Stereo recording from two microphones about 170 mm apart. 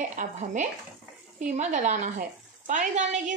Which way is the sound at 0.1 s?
50° right (ahead or behind).